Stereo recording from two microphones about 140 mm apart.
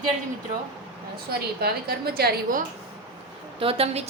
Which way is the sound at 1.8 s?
90° right.